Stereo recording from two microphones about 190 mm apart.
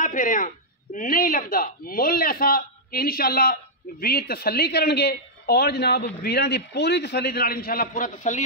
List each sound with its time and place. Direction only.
0.0 s a man's voice: 45° left (ahead or behind)